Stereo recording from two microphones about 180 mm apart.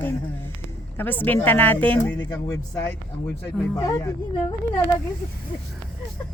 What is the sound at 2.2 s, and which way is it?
A woman's voice, 20° left (ahead or behind).